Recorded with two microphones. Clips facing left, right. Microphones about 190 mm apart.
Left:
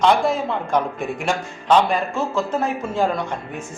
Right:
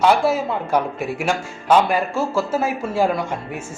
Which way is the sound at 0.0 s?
5° right (ahead or behind).